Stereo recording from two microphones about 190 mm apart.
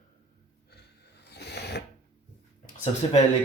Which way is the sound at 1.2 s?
60° left (ahead or behind).